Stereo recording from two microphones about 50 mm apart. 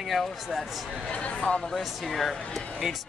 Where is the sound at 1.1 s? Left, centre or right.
Left.